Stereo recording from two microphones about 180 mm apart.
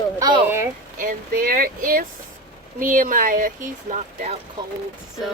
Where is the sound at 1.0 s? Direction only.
50° right (ahead or behind).